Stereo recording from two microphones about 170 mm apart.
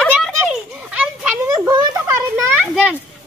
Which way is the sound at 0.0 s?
Centre (ahead or behind).